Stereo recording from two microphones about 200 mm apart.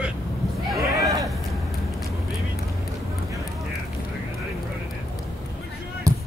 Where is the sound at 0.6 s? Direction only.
Centre (ahead or behind).